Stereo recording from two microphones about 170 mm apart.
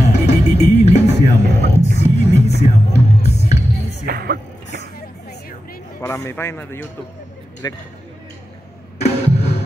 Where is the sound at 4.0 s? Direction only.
60° right (ahead or behind).